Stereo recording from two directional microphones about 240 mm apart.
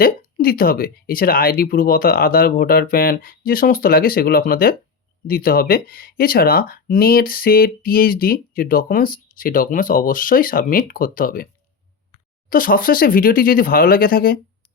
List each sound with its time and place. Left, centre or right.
0.0 s speech: left
12.5 s speech: left